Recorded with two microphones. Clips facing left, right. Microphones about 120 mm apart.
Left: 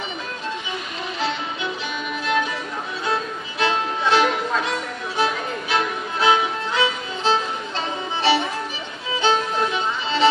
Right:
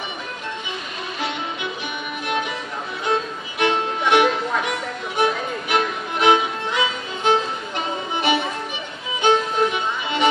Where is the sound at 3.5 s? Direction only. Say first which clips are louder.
Right 2 dB; 15° right (ahead or behind).